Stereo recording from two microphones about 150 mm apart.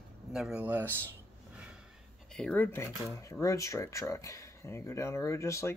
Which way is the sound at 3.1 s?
20° left (ahead or behind).